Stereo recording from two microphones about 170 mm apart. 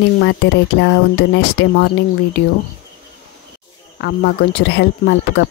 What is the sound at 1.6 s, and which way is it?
Speech, 90° left.